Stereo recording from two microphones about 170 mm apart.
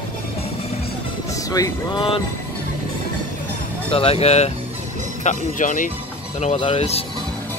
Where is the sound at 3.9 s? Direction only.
35° left (ahead or behind).